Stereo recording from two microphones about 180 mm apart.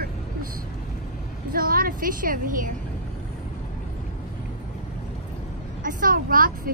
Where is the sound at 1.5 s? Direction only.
55° right (ahead or behind).